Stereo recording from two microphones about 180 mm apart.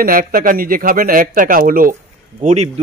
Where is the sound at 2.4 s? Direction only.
40° right (ahead or behind).